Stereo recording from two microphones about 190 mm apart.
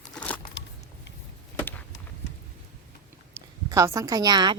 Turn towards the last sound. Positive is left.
turn(degrees=-20)  # may be behind; listen again after turning